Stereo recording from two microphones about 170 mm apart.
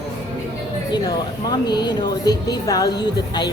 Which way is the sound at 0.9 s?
25° left (ahead or behind).